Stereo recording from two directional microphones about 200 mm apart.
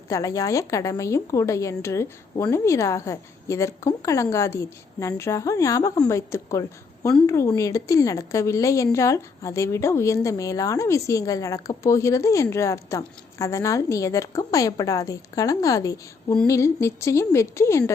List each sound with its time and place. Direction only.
0.1 s a woman's voice: 15° left (ahead or behind)